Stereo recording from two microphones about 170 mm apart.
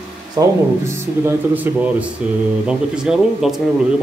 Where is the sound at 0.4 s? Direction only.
20° right (ahead or behind).